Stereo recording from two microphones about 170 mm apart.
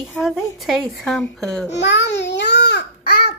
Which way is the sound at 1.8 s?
90° left.